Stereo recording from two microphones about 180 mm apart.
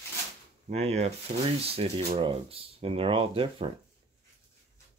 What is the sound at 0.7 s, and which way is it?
Speech, 35° right (ahead or behind).